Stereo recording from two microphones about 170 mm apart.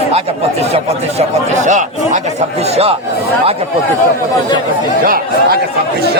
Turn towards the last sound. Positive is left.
turn(degrees=-60)  # may be behind; listen again after turning